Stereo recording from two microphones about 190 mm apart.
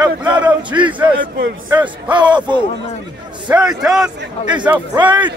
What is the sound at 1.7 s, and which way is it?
Speech, 5° right (ahead or behind).